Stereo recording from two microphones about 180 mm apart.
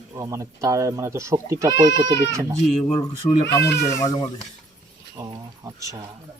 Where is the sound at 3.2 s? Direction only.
10° left (ahead or behind).